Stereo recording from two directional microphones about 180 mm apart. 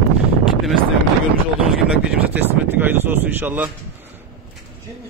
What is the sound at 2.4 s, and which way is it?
Speech, 10° right (ahead or behind).